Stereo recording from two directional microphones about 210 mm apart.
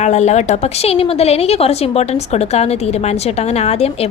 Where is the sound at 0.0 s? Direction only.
35° left (ahead or behind).